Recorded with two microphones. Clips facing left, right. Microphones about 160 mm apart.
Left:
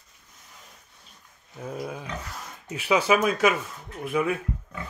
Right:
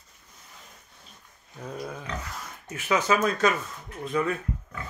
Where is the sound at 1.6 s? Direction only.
10° left (ahead or behind).